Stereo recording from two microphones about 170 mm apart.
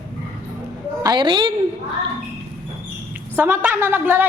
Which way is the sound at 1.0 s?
25° right (ahead or behind).